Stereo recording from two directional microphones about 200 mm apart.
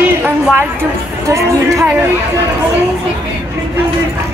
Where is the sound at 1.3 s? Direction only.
10° right (ahead or behind).